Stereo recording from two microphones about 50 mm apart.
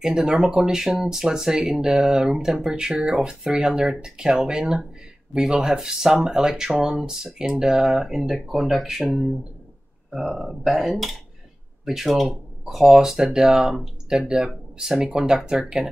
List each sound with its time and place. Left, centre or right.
0.0 s speech: centre